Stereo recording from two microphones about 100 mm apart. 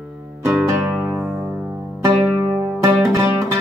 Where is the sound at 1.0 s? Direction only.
15° right (ahead or behind).